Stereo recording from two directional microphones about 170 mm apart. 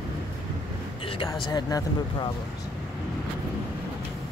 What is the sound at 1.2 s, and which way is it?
Speech, 20° left (ahead or behind).